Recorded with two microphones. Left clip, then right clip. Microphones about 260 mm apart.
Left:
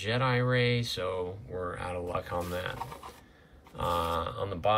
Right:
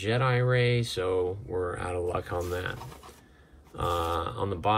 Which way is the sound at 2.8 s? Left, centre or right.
Left.